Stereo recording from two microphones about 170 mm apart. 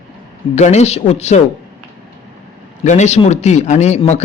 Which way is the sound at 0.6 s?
40° left (ahead or behind).